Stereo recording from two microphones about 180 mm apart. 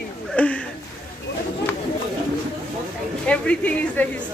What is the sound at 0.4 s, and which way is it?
Speech, 10° left (ahead or behind).